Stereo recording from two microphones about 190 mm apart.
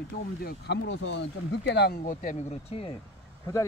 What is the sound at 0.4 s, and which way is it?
Speech, 55° left (ahead or behind).